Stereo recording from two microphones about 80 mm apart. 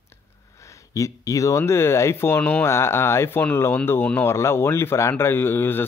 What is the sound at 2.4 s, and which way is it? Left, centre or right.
Speech, left.